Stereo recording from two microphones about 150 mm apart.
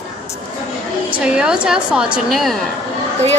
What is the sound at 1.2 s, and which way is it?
A woman's voice, 5° right (ahead or behind).